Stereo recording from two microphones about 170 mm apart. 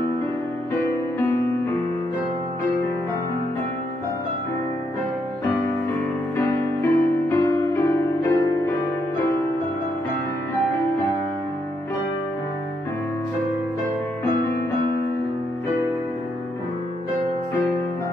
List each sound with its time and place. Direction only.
6.3 s music: 15° left (ahead or behind)